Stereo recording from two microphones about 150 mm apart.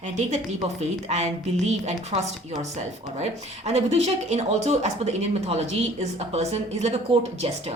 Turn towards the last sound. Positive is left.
turn(degrees=-45)  # may be behind; listen again after turning